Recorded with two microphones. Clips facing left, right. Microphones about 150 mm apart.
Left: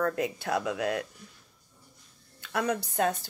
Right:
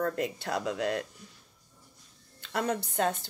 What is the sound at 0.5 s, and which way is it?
Speech, 25° right (ahead or behind).